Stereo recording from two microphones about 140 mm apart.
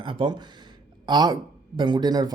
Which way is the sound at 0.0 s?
35° right (ahead or behind).